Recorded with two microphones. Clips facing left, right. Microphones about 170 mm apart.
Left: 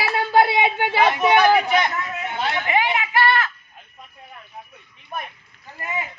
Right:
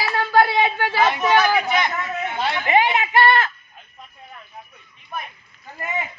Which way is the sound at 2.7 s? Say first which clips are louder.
Right 4 dB; 25° right (ahead or behind).